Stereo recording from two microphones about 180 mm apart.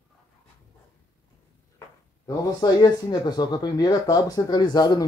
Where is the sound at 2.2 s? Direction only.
20° left (ahead or behind).